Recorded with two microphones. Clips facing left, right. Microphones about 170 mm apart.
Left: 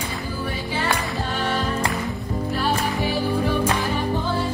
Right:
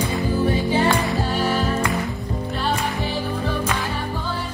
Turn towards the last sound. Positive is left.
turn(degrees=0)  # may be behind; listen again after turning